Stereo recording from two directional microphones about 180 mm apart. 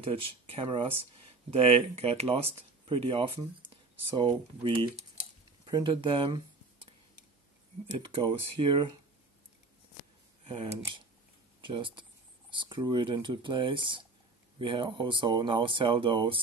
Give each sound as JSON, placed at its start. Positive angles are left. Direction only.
{"t": 0.0, "sound": "speech", "side_deg": -30}
{"t": 8.0, "sound": "speech", "side_deg": -30}
{"t": 10.4, "sound": "speech", "side_deg": -35}